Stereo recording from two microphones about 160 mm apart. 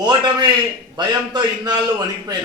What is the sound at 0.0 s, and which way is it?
A man's voice, 25° right (ahead or behind).